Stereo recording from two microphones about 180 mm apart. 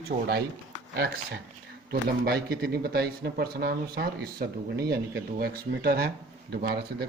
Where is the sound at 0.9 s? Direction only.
60° right (ahead or behind).